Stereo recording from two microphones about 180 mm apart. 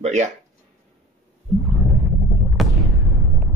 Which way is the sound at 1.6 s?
Centre (ahead or behind).